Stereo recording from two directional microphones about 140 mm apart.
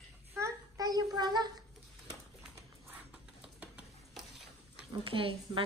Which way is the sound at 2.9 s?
10° right (ahead or behind).